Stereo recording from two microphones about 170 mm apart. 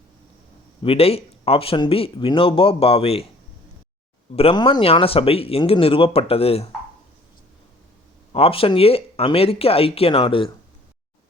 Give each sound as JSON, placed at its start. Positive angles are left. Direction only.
{"t": 0.8, "sound": "speech", "side_deg": 35}
{"t": 4.4, "sound": "speech", "side_deg": 35}
{"t": 8.3, "sound": "speech", "side_deg": 35}